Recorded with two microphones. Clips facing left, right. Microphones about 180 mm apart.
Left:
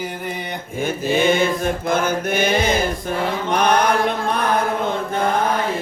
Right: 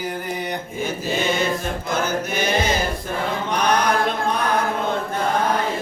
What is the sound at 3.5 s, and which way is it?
Mantra, 55° left (ahead or behind).